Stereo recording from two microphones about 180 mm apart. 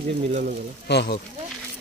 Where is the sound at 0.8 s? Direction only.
70° left (ahead or behind).